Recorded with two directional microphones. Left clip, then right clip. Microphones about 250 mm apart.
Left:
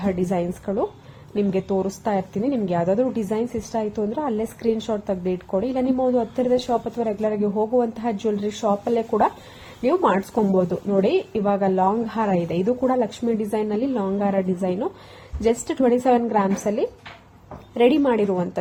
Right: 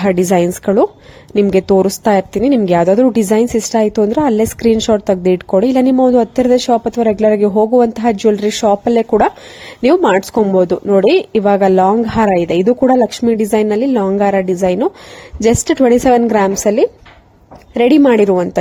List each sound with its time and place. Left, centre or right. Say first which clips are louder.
0.0 s a woman's voice: right 12 dB; right